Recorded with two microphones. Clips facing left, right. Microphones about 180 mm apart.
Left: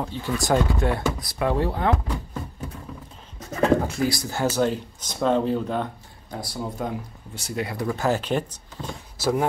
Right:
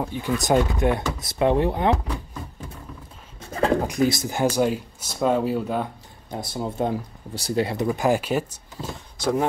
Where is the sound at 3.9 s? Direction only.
20° right (ahead or behind).